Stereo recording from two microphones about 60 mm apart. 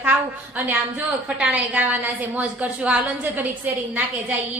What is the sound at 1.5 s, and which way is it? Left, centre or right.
A woman's voice, right.